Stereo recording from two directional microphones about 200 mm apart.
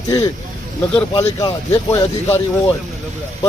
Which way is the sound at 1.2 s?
15° left (ahead or behind).